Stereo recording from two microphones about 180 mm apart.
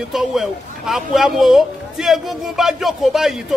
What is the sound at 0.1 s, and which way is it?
A man's voice, centre (ahead or behind).